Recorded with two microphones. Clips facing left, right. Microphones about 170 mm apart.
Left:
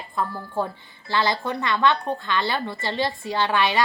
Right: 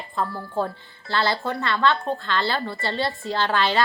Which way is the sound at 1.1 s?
15° left (ahead or behind).